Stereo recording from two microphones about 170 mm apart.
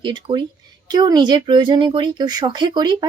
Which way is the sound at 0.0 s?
25° right (ahead or behind).